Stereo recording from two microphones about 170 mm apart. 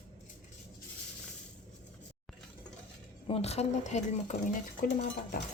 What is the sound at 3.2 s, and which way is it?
Speech, 35° left (ahead or behind).